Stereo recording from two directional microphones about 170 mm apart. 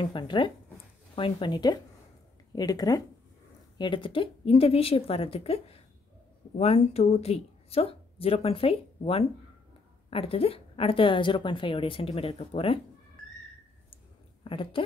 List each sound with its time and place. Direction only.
0.0 s a woman's voice: 30° left (ahead or behind)
14.4 s a woman's voice: 30° left (ahead or behind)